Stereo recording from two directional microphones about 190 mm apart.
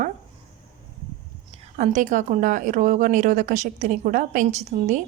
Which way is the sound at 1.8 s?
40° right (ahead or behind).